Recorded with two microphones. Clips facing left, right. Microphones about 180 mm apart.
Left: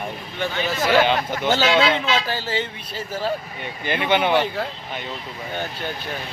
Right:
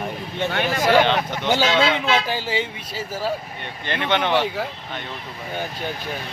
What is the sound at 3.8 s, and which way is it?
Speech, 10° left (ahead or behind).